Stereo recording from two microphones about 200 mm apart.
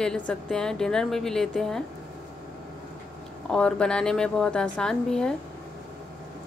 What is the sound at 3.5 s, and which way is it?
A woman's voice, 5° left (ahead or behind).